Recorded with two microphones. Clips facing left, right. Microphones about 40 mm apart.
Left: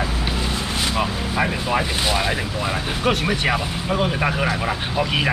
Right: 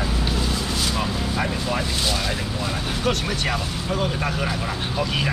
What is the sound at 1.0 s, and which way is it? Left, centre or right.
Speech, left.